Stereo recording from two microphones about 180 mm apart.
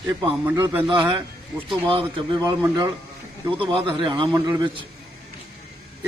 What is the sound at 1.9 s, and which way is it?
Speech, 30° right (ahead or behind).